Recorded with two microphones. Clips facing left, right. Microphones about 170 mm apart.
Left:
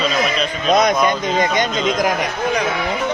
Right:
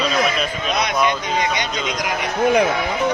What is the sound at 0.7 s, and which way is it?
Speech, 45° left (ahead or behind).